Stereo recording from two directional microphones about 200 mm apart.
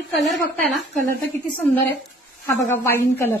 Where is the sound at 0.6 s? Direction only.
10° left (ahead or behind).